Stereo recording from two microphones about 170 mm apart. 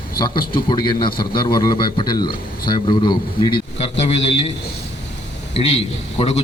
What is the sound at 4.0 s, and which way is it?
Speech, 40° left (ahead or behind).